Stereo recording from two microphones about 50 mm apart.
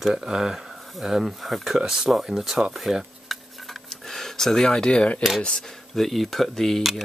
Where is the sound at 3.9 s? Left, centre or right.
Centre.